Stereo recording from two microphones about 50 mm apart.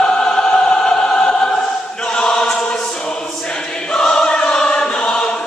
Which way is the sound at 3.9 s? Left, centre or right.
Centre.